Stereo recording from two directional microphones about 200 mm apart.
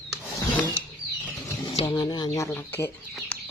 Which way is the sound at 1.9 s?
20° left (ahead or behind).